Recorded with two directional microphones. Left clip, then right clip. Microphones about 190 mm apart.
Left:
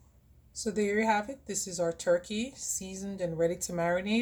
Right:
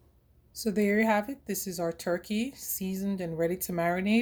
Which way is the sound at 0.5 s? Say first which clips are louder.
Right 2 dB; 40° right (ahead or behind).